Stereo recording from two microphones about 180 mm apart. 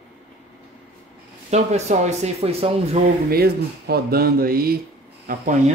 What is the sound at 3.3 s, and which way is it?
Speech, 60° right (ahead or behind).